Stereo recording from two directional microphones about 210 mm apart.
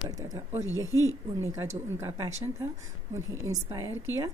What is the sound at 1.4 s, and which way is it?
Speech, 15° right (ahead or behind).